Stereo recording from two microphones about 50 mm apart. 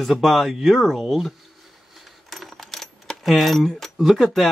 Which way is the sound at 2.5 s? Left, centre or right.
Centre.